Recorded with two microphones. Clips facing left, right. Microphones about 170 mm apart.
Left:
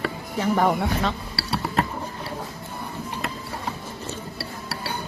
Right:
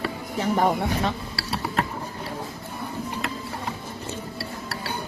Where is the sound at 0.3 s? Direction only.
20° right (ahead or behind).